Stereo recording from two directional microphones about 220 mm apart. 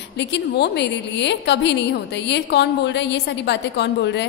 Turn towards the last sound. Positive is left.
turn(degrees=50)  # may be behind; listen again after turning